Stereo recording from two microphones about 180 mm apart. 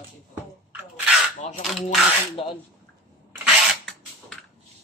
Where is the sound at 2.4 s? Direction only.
30° left (ahead or behind).